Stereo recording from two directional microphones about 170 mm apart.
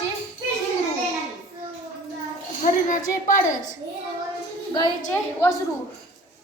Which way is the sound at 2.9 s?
50° left (ahead or behind).